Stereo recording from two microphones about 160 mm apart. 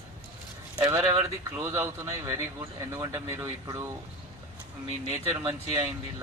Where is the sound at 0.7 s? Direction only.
25° right (ahead or behind).